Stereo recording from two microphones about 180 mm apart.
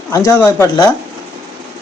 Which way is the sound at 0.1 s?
15° left (ahead or behind).